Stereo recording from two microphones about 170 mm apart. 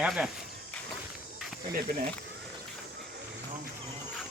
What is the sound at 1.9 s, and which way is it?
Speech, 50° right (ahead or behind).